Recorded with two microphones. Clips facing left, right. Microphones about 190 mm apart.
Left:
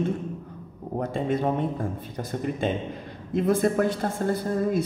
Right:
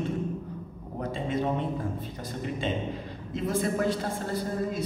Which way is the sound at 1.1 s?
50° left (ahead or behind).